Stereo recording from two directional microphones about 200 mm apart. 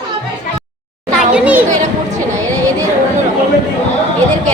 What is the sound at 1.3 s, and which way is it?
Children playing, 5° right (ahead or behind).